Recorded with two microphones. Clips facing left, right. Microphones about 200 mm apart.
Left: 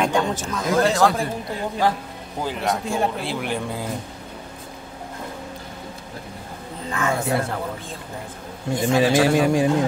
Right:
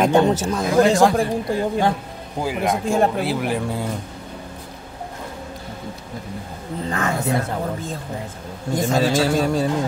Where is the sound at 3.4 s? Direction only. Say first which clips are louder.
Right 3 dB; 5° right (ahead or behind).